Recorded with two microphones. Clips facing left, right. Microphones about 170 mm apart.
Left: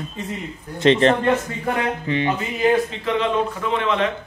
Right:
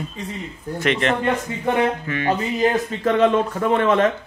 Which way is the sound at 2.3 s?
40° right (ahead or behind).